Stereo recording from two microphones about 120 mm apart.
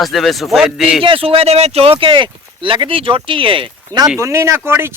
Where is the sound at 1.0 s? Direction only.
50° right (ahead or behind).